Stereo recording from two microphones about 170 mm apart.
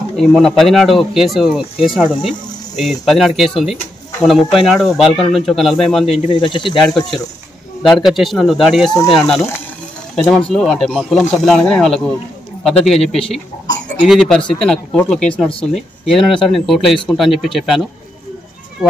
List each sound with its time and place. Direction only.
0.1 s speech: centre (ahead or behind)
2.8 s speech: centre (ahead or behind)
6.1 s speech: 30° left (ahead or behind)
7.8 s speech: centre (ahead or behind)